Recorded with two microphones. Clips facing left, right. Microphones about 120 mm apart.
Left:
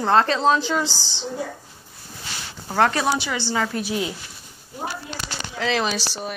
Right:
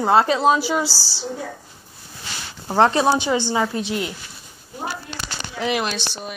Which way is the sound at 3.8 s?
10° left (ahead or behind).